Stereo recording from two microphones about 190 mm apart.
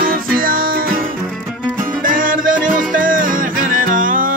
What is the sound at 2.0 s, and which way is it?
Music, 45° right (ahead or behind).